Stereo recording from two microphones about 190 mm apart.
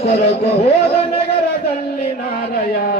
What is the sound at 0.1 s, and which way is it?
Chant, 60° left (ahead or behind).